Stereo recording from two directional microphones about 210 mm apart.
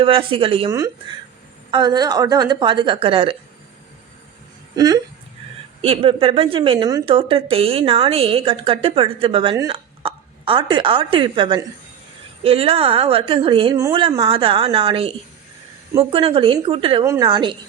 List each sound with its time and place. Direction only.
0.0 s a woman's voice: 25° right (ahead or behind)
1.7 s a woman's voice: 20° right (ahead or behind)
5.8 s a woman's voice: 25° right (ahead or behind)
16.1 s a woman's voice: 25° right (ahead or behind)